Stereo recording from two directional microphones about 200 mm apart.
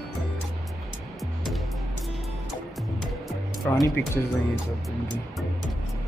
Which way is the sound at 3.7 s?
15° left (ahead or behind).